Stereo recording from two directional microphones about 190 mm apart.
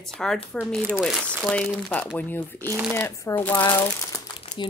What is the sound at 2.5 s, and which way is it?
Speech, 15° right (ahead or behind).